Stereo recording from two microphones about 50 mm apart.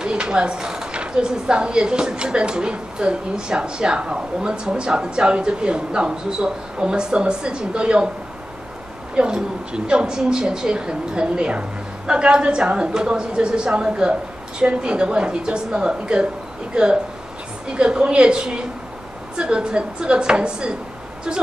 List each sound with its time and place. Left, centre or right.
0.0 s a woman's voice: centre
9.1 s a woman's voice: centre